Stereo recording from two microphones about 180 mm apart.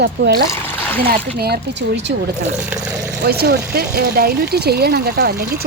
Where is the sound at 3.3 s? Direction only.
60° right (ahead or behind).